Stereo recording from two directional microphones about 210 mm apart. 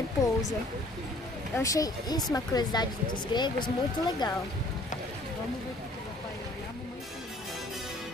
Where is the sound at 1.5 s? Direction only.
15° left (ahead or behind).